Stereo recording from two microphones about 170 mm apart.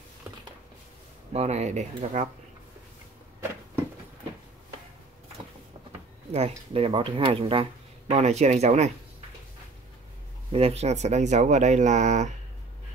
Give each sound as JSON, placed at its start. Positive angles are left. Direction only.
{"t": 1.3, "sound": "speech", "side_deg": -40}
{"t": 6.3, "sound": "speech", "side_deg": -35}
{"t": 10.5, "sound": "speech", "side_deg": -35}